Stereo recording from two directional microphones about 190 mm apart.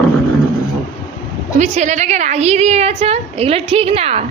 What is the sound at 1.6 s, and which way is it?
A woman's voice, 40° right (ahead or behind).